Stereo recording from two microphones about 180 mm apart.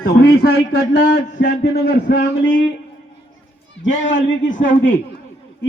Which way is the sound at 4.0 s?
90° left.